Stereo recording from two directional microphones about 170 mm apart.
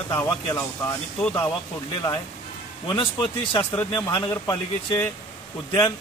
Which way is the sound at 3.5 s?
25° left (ahead or behind).